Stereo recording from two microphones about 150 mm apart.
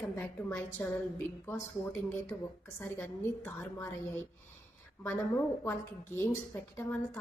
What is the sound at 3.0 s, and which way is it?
Speech, 15° left (ahead or behind).